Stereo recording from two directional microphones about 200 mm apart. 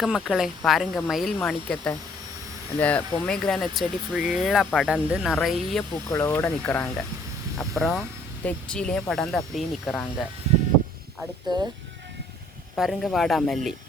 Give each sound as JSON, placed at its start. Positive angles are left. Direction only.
{"t": 0.0, "sound": "speech", "side_deg": 0}
{"t": 6.1, "sound": "speech", "side_deg": 15}
{"t": 10.5, "sound": "a sound", "side_deg": -35}
{"t": 12.7, "sound": "speech", "side_deg": 0}